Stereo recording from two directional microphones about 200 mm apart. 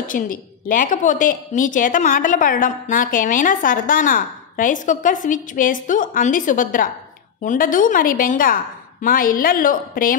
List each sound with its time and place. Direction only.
0.0 s a woman's voice: 40° left (ahead or behind)